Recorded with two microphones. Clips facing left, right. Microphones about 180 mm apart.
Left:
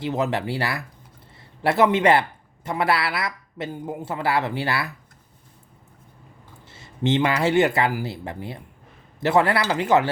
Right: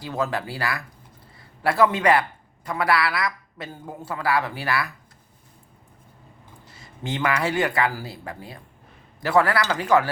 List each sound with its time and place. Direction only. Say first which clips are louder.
0.0 s a man's voice: left 3 dB; 25° left (ahead or behind)
6.7 s a man's voice: left 9 dB; 25° left (ahead or behind)